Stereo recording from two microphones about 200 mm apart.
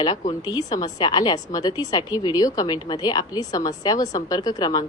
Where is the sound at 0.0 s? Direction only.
20° left (ahead or behind).